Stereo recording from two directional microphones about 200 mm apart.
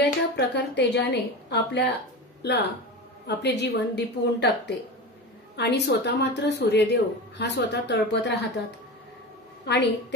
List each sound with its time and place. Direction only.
0.0 s a woman's voice: 60° left (ahead or behind)
9.7 s a woman's voice: 55° left (ahead or behind)